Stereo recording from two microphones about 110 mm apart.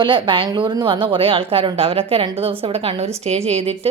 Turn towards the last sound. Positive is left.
turn(degrees=-65)  # may be behind; listen again after turning